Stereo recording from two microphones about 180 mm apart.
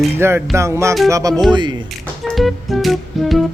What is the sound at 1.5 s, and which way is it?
Speech, 25° right (ahead or behind).